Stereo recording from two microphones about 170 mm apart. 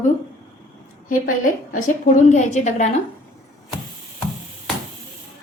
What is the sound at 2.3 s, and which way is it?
Speech, 45° left (ahead or behind).